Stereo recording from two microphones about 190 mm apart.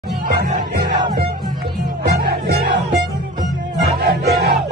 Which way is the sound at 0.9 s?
25° right (ahead or behind).